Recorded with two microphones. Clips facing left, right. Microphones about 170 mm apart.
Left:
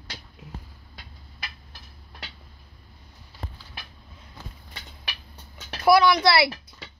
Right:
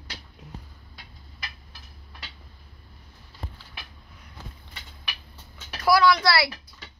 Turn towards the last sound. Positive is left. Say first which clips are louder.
# left 1 dB
turn(degrees=25)  # may be behind; listen again after turning